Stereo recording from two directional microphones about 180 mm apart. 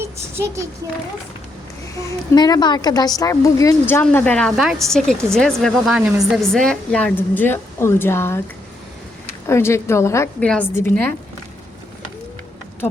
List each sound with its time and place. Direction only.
0.0 s child singing: 15° right (ahead or behind)
0.8 s speech: 20° right (ahead or behind)
2.3 s a woman's voice: 20° left (ahead or behind)
9.5 s a woman's voice: 15° left (ahead or behind)